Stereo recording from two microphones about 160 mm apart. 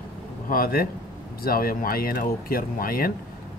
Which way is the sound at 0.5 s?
70° left (ahead or behind).